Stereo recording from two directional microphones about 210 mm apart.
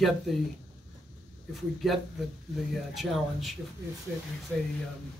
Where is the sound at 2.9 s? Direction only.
Centre (ahead or behind).